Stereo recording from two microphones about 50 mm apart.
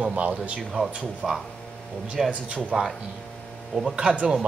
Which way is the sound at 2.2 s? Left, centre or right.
Right.